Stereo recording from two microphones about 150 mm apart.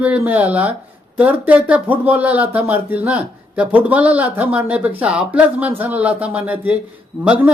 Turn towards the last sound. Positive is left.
turn(degrees=-10)  # may be behind; listen again after turning